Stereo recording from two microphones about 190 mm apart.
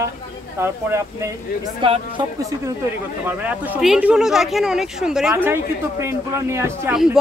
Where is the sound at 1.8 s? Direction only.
25° right (ahead or behind).